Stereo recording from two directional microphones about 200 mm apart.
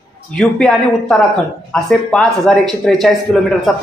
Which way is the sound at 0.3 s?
5° left (ahead or behind).